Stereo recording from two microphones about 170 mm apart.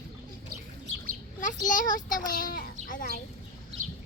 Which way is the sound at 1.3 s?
50° left (ahead or behind).